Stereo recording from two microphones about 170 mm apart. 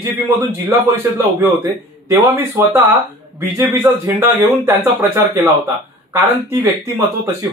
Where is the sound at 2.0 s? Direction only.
15° right (ahead or behind).